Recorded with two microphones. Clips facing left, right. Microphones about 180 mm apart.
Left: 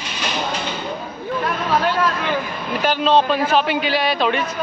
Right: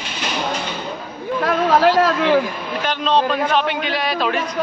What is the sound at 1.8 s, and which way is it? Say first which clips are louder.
Speech: right 5 dB; 90° right.